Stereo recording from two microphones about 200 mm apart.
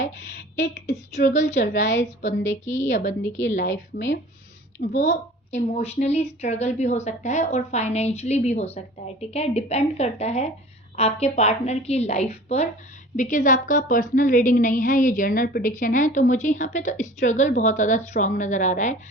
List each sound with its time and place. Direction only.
0.2 s speech: 60° left (ahead or behind)
1.1 s a woman's voice: 35° left (ahead or behind)
1.7 s a woman's voice: 65° left (ahead or behind)
4.8 s a woman's voice: 50° left (ahead or behind)
5.5 s a woman's voice: 35° left (ahead or behind)